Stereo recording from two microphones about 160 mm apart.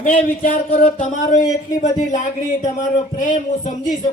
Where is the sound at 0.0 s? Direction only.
55° left (ahead or behind).